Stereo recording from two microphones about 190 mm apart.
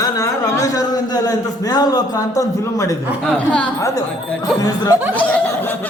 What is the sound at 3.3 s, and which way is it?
Speech, 5° left (ahead or behind).